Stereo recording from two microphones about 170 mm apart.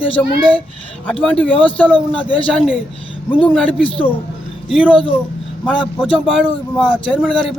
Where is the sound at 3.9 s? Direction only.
30° left (ahead or behind).